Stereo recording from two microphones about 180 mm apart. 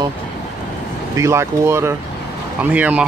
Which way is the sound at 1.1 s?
15° right (ahead or behind).